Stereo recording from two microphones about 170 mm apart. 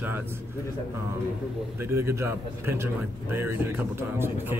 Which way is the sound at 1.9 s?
15° right (ahead or behind).